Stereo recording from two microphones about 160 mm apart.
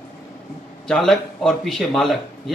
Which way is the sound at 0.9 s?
5° left (ahead or behind).